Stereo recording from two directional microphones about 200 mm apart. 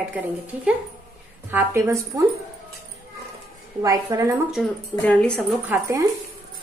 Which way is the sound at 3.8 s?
15° right (ahead or behind).